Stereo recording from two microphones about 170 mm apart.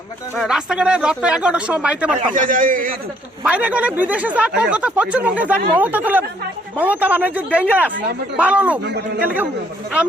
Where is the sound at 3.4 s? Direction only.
10° right (ahead or behind).